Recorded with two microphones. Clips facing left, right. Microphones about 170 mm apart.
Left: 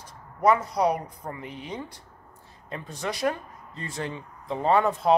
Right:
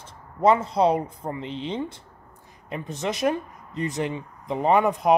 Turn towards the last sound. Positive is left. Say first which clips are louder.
# right 2 dB
turn(degrees=-15)  # may be behind; listen again after turning